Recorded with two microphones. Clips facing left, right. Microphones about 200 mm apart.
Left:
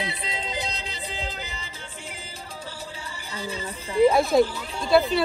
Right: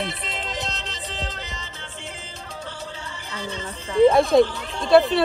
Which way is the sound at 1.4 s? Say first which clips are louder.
Right 1 dB; 10° left (ahead or behind).